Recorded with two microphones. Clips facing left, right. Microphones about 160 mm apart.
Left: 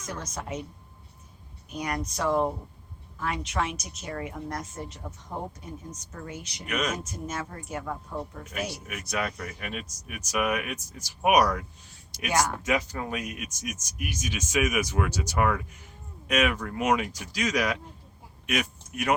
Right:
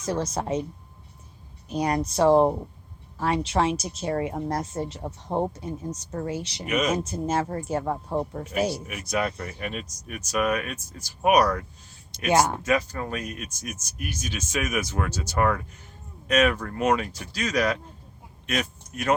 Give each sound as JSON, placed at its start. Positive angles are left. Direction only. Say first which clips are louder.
{"t": 0.0, "sound": "a woman's voice", "louder": "right 9 dB", "side_deg": -30}
{"t": 1.7, "sound": "a woman's voice", "louder": "right 7 dB", "side_deg": -30}
{"t": 6.7, "sound": "speech", "louder": "right 5 dB", "side_deg": -5}
{"t": 7.0, "sound": "a woman's voice", "louder": "right 9 dB", "side_deg": -30}
{"t": 8.9, "sound": "speech", "louder": "right 4 dB", "side_deg": -5}
{"t": 12.3, "sound": "speech", "louder": "right 5 dB", "side_deg": -25}
{"t": 12.6, "sound": "speech", "louder": "right 3 dB", "side_deg": 15}
{"t": 18.4, "sound": "a sound", "louder": "right 1 dB", "side_deg": 10}